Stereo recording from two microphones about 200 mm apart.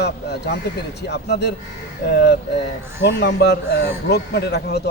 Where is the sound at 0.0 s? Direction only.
55° left (ahead or behind).